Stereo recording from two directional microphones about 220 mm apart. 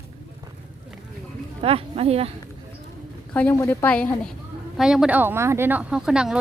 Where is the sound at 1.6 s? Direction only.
25° right (ahead or behind).